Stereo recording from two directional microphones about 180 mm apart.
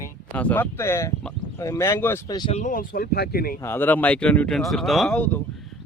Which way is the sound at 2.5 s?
45° left (ahead or behind).